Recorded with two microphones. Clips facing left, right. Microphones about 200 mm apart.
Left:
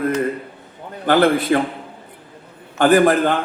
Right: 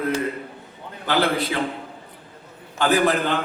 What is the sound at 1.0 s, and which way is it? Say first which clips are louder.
Speech: left 7 dB; 50° left (ahead or behind).